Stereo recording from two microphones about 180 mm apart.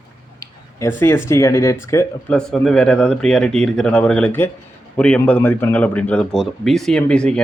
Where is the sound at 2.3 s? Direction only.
5° left (ahead or behind).